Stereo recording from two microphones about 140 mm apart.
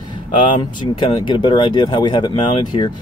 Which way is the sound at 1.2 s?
35° left (ahead or behind).